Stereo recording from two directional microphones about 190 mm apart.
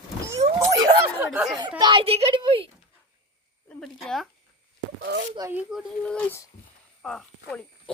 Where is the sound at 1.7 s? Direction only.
25° right (ahead or behind).